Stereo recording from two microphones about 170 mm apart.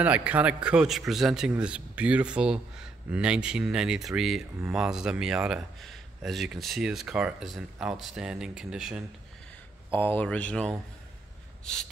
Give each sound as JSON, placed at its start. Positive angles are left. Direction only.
{"t": 0.0, "sound": "a man's voice", "side_deg": -10}
{"t": 9.8, "sound": "speech", "side_deg": 10}
{"t": 11.6, "sound": "gasp", "side_deg": 5}